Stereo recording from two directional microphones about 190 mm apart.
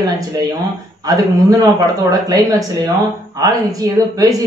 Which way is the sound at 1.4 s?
20° right (ahead or behind).